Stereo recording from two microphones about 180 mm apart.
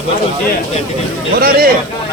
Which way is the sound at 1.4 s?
55° right (ahead or behind).